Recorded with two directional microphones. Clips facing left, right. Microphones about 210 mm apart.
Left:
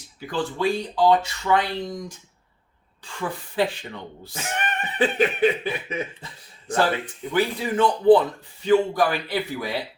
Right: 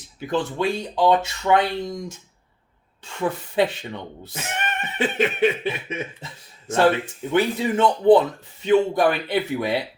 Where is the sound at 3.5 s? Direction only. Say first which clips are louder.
Even; 20° right (ahead or behind).